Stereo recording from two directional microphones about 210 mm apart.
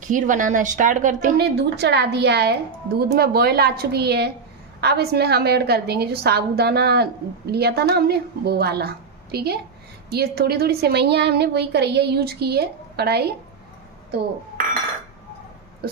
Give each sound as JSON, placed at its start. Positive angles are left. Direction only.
{"t": 0.1, "sound": "a woman's voice", "side_deg": -40}